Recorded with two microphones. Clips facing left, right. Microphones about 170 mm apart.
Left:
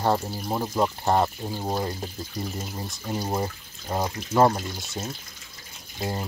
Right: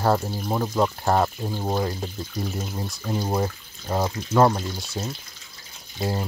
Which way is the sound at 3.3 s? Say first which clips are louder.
Right 3 dB; 5° left (ahead or behind).